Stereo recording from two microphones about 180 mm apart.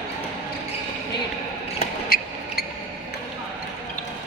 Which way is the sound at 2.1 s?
55° left (ahead or behind).